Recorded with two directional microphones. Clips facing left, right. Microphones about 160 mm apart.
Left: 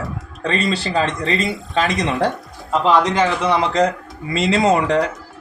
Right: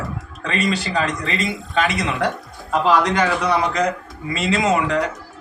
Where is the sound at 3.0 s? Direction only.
25° left (ahead or behind).